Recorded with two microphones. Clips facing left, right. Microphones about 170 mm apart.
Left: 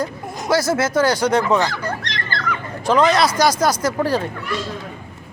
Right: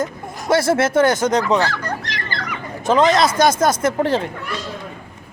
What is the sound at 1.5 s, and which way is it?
Speech, 15° left (ahead or behind).